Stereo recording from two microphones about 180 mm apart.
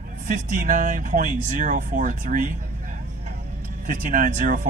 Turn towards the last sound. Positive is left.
turn(degrees=-45)  # may be behind; listen again after turning